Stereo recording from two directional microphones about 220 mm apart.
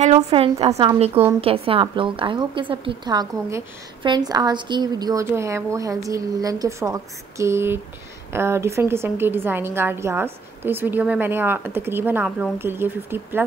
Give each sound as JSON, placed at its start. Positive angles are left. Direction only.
{"t": 0.0, "sound": "a woman's voice", "side_deg": -25}